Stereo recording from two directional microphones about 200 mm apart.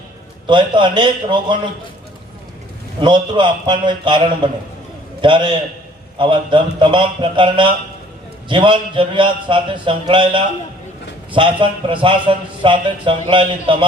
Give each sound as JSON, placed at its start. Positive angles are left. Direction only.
{"t": 0.4, "sound": "a man's voice", "side_deg": -25}
{"t": 3.0, "sound": "a man's voice", "side_deg": -25}
{"t": 5.2, "sound": "a man's voice", "side_deg": -25}